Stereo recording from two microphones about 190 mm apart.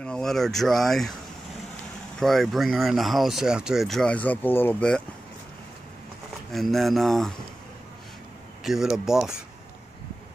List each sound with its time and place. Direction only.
0.0 s speech: 5° left (ahead or behind)
2.1 s speech: centre (ahead or behind)
6.5 s speech: centre (ahead or behind)
8.6 s speech: centre (ahead or behind)